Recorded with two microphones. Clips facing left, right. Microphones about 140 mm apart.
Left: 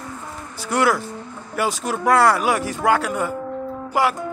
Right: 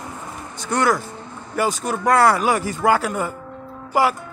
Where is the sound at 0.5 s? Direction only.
5° left (ahead or behind).